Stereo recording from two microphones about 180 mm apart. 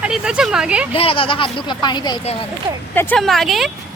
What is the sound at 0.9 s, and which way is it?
Speech, 30° left (ahead or behind).